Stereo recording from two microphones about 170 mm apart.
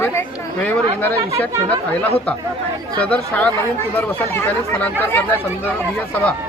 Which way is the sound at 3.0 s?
10° left (ahead or behind).